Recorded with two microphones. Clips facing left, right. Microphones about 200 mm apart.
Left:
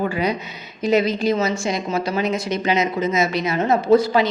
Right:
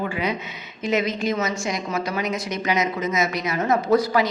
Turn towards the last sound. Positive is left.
turn(degrees=25)  # may be behind; listen again after turning